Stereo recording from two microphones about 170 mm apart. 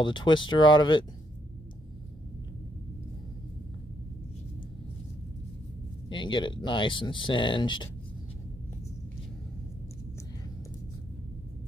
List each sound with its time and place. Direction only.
0.0 s speech: 30° left (ahead or behind)
6.0 s speech: 30° left (ahead or behind)